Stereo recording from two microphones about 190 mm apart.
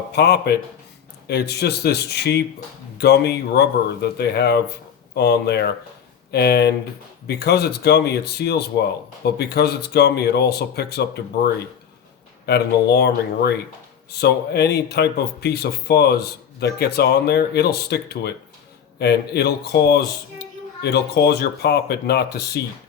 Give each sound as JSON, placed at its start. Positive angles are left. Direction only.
{"t": 0.1, "sound": "speech", "side_deg": 60}